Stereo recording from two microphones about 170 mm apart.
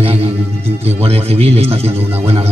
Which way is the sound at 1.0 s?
35° right (ahead or behind).